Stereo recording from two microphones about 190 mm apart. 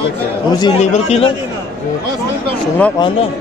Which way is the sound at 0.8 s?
35° left (ahead or behind).